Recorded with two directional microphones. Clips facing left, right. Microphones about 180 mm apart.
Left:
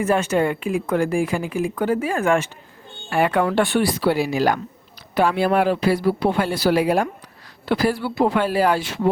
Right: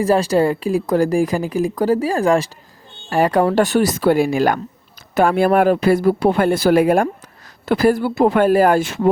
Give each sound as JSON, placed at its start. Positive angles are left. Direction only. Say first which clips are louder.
{"t": 0.0, "sound": "speech", "louder": "right 4 dB", "side_deg": -35}